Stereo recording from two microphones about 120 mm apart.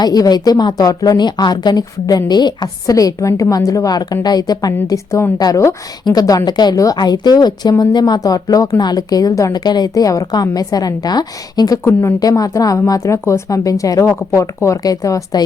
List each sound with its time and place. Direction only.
0.0 s a woman's voice: 35° left (ahead or behind)